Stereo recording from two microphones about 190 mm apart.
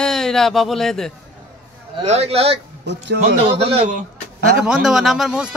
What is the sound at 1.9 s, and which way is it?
A man's voice, 35° right (ahead or behind).